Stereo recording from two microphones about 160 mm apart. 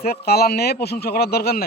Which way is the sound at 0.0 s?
75° left (ahead or behind).